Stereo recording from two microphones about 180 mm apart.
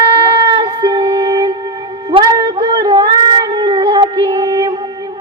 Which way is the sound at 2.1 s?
25° right (ahead or behind).